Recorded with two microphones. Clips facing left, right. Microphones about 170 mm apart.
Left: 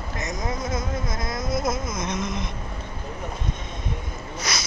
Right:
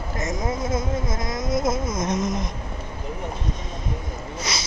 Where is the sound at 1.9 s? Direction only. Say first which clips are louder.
Right 4 dB; 40° right (ahead or behind).